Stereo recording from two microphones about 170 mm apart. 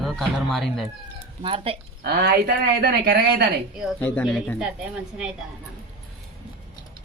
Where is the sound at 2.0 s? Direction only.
70° right (ahead or behind).